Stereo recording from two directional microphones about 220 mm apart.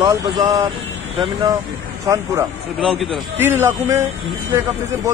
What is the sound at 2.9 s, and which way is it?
Speech, 5° right (ahead or behind).